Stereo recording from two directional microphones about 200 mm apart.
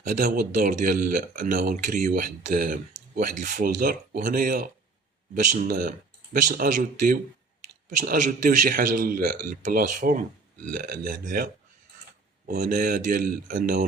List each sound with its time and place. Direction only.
0.0 s speech: 40° right (ahead or behind)
12.5 s speech: 50° right (ahead or behind)